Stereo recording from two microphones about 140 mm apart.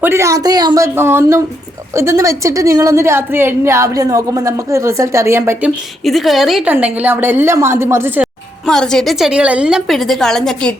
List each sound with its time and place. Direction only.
0.0 s a woman's voice: 20° right (ahead or behind)
0.9 s a woman's voice: 15° right (ahead or behind)
6.1 s a woman's voice: centre (ahead or behind)
6.7 s a woman's voice: 10° right (ahead or behind)
8.6 s a woman's voice: 5° left (ahead or behind)